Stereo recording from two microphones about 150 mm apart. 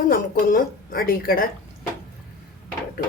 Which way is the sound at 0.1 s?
70° left (ahead or behind).